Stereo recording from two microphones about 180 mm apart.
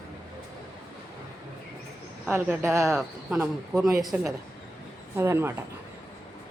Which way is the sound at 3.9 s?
20° right (ahead or behind).